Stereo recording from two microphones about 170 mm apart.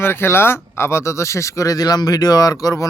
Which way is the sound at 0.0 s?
15° left (ahead or behind).